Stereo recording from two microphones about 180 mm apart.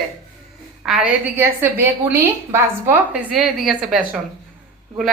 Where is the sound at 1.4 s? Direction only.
15° right (ahead or behind).